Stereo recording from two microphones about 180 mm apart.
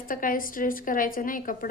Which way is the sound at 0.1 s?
50° left (ahead or behind).